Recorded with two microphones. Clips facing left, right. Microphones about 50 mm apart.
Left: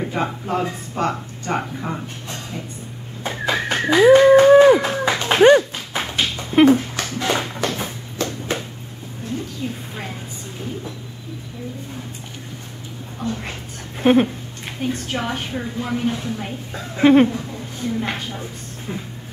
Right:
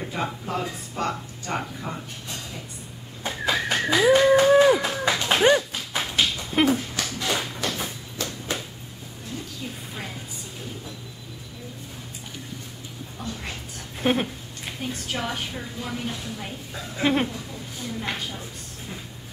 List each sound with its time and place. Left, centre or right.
0.0 s a woman's voice: centre
3.3 s livestock: centre
5.8 s dog: centre
6.5 s speech: centre
7.2 s a sound: centre
13.4 s a sound: centre
14.8 s a woman's voice: centre